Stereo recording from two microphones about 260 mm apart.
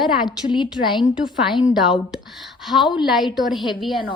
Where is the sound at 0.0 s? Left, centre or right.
Centre.